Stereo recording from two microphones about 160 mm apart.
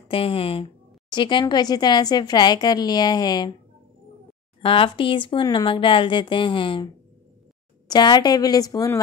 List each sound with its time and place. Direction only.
0.1 s speech: 35° left (ahead or behind)
4.6 s speech: 35° left (ahead or behind)
7.9 s speech: 25° left (ahead or behind)